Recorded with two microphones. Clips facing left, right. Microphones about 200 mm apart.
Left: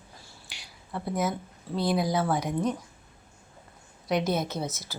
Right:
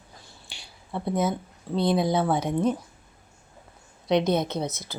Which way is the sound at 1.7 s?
25° right (ahead or behind).